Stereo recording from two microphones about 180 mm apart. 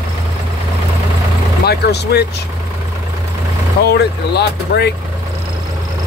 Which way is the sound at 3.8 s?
65° left (ahead or behind).